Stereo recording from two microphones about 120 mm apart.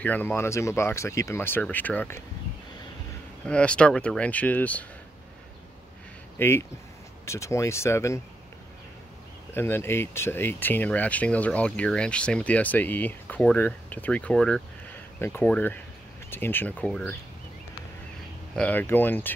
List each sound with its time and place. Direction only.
0.0 s speech: 15° left (ahead or behind)
3.4 s speech: 10° left (ahead or behind)
6.3 s speech: 20° left (ahead or behind)
9.5 s speech: 20° left (ahead or behind)
15.1 s speech: 20° left (ahead or behind)
18.5 s speech: 10° left (ahead or behind)